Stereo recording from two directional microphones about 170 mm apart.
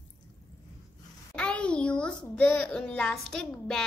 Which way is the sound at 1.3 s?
5° left (ahead or behind).